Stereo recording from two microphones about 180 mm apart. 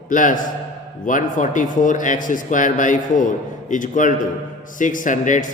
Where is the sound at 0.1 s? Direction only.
45° left (ahead or behind).